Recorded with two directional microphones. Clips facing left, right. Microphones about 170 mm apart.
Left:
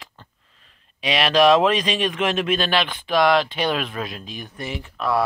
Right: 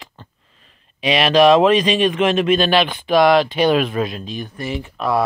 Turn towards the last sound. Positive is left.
turn(degrees=-15)  # may be behind; listen again after turning